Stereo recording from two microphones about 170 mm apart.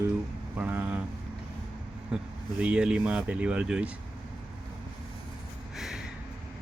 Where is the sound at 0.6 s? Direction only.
5° right (ahead or behind).